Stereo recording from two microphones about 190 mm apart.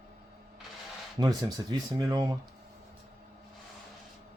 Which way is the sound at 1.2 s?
20° right (ahead or behind).